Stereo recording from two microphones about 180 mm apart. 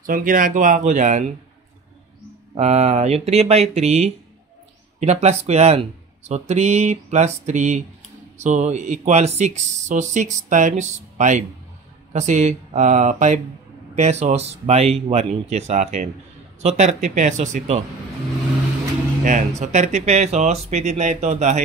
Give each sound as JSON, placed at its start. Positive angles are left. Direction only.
{"t": 0.0, "sound": "speech", "side_deg": -50}
{"t": 2.5, "sound": "speech", "side_deg": -35}
{"t": 19.2, "sound": "speech", "side_deg": -40}